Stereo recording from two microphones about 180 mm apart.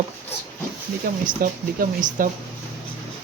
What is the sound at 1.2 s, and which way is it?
Speech, 50° right (ahead or behind).